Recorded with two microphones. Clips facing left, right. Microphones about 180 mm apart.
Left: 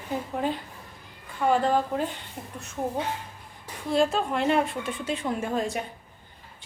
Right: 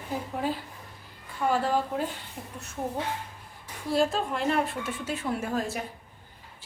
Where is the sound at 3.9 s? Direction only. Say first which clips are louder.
Left 2 dB; centre (ahead or behind).